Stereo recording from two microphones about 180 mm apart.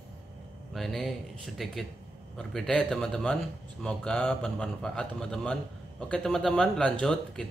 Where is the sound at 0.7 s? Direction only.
Centre (ahead or behind).